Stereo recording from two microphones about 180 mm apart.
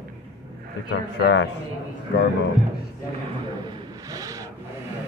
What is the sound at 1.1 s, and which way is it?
Speech, 75° left (ahead or behind).